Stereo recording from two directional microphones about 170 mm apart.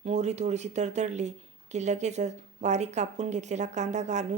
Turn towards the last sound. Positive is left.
turn(degrees=-45)  # may be behind; listen again after turning